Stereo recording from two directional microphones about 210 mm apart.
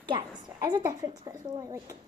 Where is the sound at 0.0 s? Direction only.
20° right (ahead or behind).